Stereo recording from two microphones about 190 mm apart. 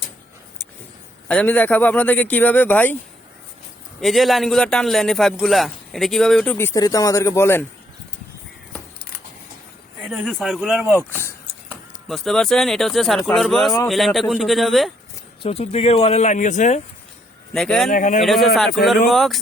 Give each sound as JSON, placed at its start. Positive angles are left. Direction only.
{"t": 1.3, "sound": "speech", "side_deg": 5}
{"t": 4.0, "sound": "a man's voice", "side_deg": 0}
{"t": 10.1, "sound": "a man's voice", "side_deg": 0}
{"t": 11.1, "sound": "speech", "side_deg": 10}
{"t": 12.0, "sound": "a man's voice", "side_deg": 0}
{"t": 15.4, "sound": "speech", "side_deg": 35}
{"t": 17.5, "sound": "a man's voice", "side_deg": 0}
{"t": 17.9, "sound": "speech", "side_deg": 45}
{"t": 18.2, "sound": "a man's voice", "side_deg": 0}